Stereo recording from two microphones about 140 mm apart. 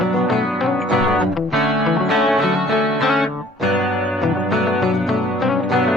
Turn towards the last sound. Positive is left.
turn(degrees=0)  # may be behind; listen again after turning